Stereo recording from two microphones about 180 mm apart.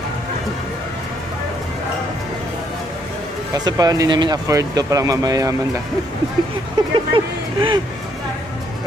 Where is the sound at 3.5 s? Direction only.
20° right (ahead or behind).